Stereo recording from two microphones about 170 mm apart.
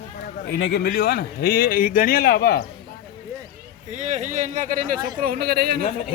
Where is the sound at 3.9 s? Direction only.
45° right (ahead or behind).